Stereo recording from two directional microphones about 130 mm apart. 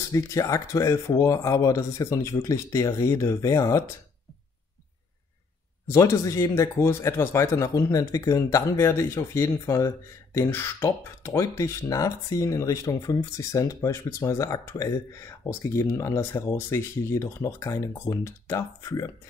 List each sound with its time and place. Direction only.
0.1 s speech: 25° left (ahead or behind)
5.9 s speech: 25° left (ahead or behind)